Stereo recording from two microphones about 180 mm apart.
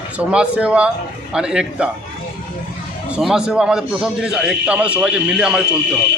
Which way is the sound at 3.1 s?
5° right (ahead or behind).